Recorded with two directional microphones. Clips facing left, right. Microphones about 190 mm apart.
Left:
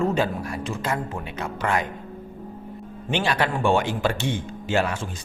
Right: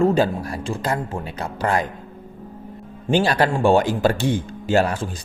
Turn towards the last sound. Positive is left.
turn(degrees=-35)  # may be behind; listen again after turning